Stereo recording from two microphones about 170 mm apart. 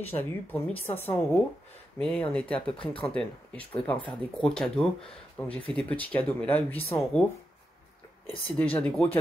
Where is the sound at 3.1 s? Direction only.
5° left (ahead or behind).